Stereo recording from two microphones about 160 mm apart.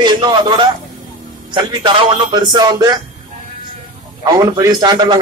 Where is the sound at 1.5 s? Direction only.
30° right (ahead or behind).